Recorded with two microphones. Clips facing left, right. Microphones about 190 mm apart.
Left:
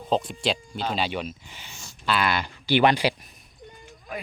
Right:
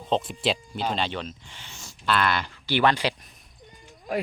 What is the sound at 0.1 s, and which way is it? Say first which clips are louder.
Speech: even; centre (ahead or behind).